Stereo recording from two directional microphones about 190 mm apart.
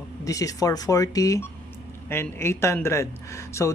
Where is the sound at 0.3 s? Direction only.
20° left (ahead or behind).